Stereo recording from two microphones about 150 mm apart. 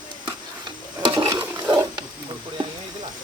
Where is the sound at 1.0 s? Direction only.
30° right (ahead or behind).